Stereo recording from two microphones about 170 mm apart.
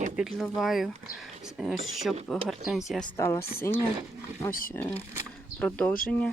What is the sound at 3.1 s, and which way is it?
Speech, 15° left (ahead or behind).